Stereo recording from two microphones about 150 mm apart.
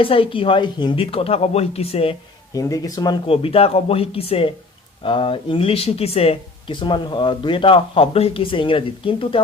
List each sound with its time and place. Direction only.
0.0 s speech: 35° left (ahead or behind)
2.5 s speech: 25° left (ahead or behind)